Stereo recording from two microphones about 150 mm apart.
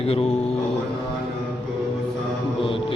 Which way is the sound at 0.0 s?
40° left (ahead or behind).